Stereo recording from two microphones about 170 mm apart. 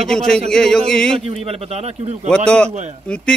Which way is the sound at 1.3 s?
35° right (ahead or behind).